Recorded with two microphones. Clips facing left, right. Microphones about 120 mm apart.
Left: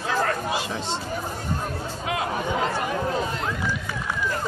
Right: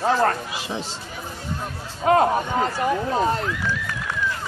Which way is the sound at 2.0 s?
45° right (ahead or behind).